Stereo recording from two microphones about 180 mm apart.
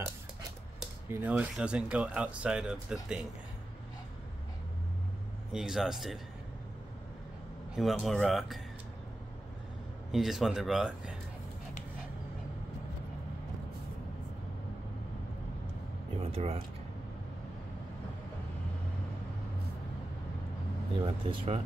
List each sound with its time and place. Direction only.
1.0 s speech: 10° right (ahead or behind)
5.5 s speech: 5° right (ahead or behind)
7.7 s speech: centre (ahead or behind)
10.1 s speech: centre (ahead or behind)
16.3 s speech: 30° right (ahead or behind)
21.0 s speech: 30° right (ahead or behind)